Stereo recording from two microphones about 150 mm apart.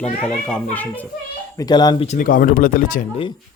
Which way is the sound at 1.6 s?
25° left (ahead or behind).